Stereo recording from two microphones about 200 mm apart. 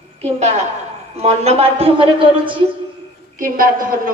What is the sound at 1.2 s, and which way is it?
A man's voice, 30° right (ahead or behind).